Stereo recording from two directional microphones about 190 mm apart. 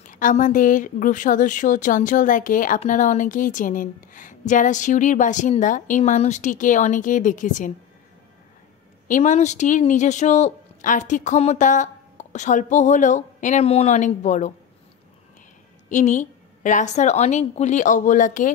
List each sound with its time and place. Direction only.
0.0 s a woman's voice: 45° left (ahead or behind)
9.0 s speech: 40° left (ahead or behind)
15.9 s speech: 40° left (ahead or behind)